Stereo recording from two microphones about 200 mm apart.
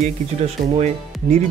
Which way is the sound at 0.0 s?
35° right (ahead or behind).